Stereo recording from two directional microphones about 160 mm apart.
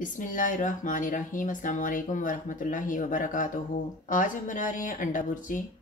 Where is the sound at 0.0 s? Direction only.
55° left (ahead or behind).